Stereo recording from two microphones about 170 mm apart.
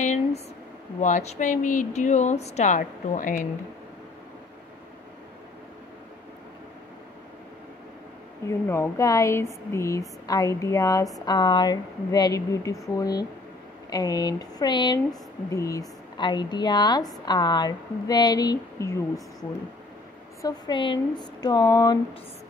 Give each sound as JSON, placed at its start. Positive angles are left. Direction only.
{"t": 0.0, "sound": "a sound", "side_deg": 45}
{"t": 1.0, "sound": "speech", "side_deg": 45}
{"t": 8.5, "sound": "a woman's voice", "side_deg": 15}
{"t": 20.4, "sound": "a woman's voice", "side_deg": 25}